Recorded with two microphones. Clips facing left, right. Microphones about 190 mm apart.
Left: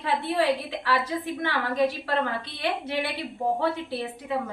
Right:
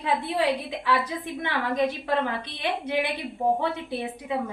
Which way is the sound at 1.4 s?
20° right (ahead or behind).